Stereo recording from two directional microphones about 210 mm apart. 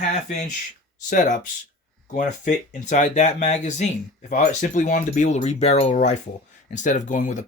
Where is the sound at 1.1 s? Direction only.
40° left (ahead or behind).